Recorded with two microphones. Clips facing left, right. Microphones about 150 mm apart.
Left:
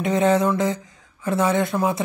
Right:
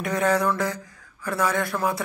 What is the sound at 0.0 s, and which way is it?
A woman's voice, 25° left (ahead or behind).